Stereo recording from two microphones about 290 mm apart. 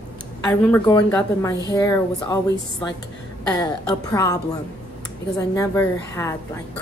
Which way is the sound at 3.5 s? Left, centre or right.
Centre.